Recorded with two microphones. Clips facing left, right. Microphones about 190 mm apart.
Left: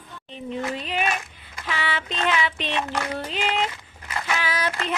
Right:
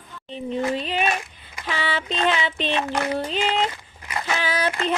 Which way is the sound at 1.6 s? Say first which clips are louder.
Right 2 dB; 30° right (ahead or behind).